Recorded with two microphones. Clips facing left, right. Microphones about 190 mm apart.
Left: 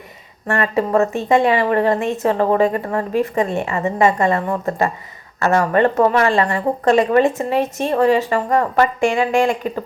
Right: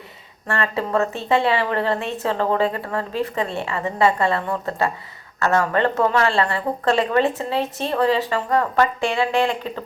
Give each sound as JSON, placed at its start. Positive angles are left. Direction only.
{"t": 0.4, "sound": "a woman's voice", "side_deg": 15}